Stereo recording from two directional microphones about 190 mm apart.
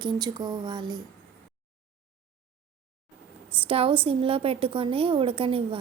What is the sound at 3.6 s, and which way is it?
A woman's voice, 30° right (ahead or behind).